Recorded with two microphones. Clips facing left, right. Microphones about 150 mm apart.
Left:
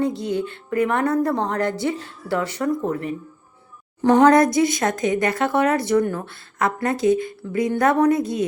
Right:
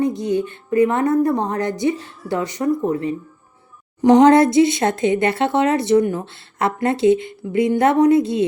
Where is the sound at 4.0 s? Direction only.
20° right (ahead or behind).